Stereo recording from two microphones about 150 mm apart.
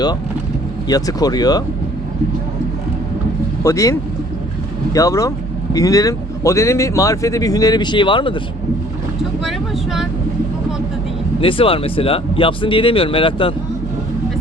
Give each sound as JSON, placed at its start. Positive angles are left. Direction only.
{"t": 0.9, "sound": "speech", "side_deg": 25}
{"t": 3.6, "sound": "speech", "side_deg": 20}
{"t": 4.9, "sound": "speech", "side_deg": 20}
{"t": 9.4, "sound": "vehicle", "side_deg": 0}
{"t": 11.3, "sound": "speech", "side_deg": 35}